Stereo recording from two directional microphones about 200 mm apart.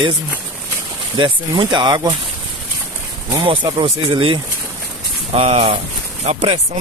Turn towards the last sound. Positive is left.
turn(degrees=-25)  # may be behind; listen again after turning